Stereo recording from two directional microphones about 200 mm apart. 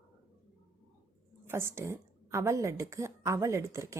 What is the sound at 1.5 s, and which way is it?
Speech, 10° right (ahead or behind).